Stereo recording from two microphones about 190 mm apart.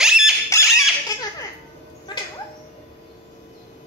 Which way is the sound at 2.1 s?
20° left (ahead or behind).